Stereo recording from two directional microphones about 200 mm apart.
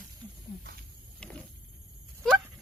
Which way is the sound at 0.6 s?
50° right (ahead or behind).